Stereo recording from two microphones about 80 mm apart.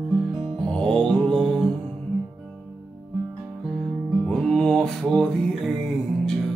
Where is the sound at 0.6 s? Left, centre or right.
Centre.